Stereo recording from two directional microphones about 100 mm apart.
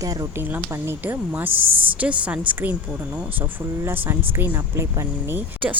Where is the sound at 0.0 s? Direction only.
40° right (ahead or behind).